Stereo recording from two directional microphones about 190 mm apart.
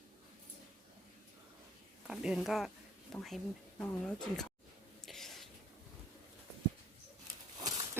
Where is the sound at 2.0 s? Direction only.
5° right (ahead or behind).